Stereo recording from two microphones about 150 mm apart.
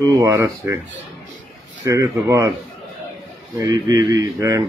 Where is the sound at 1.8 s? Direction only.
20° right (ahead or behind).